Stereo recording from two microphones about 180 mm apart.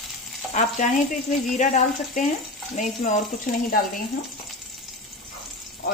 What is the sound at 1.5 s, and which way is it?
Speech, 45° left (ahead or behind).